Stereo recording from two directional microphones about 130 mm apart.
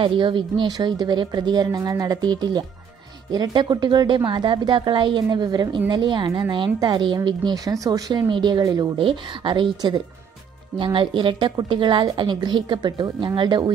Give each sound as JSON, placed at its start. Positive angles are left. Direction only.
{"t": 0.0, "sound": "a woman's voice", "side_deg": -40}